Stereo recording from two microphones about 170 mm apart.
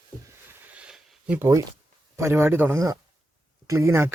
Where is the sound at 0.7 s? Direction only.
5° right (ahead or behind).